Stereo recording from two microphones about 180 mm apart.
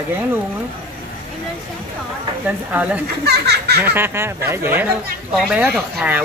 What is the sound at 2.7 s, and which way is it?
Speech, 10° right (ahead or behind).